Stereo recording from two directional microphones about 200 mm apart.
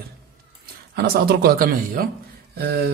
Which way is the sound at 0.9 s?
50° right (ahead or behind).